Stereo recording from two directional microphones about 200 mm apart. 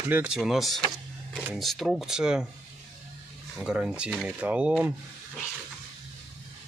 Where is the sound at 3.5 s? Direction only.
5° right (ahead or behind).